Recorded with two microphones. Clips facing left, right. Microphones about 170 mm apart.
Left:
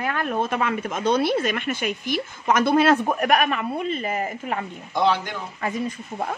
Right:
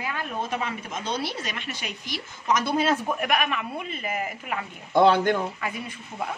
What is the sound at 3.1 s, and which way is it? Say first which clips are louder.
Speech: left 5 dB; 45° left (ahead or behind).